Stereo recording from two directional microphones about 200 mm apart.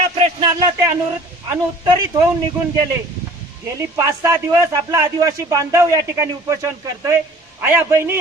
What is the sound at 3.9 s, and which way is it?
A woman's voice, 15° right (ahead or behind).